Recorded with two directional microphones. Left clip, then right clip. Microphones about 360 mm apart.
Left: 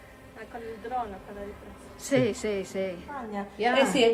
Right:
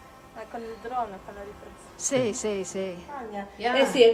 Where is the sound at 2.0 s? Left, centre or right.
Centre.